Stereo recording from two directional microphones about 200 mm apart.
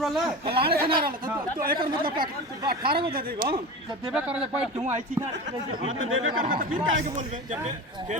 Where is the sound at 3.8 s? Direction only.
5° right (ahead or behind).